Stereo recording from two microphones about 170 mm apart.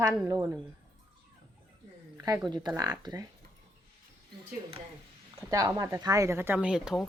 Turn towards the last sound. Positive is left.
turn(degrees=-5)  # may be behind; listen again after turning